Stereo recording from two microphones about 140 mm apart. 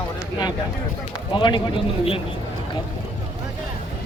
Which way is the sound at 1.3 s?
35° left (ahead or behind).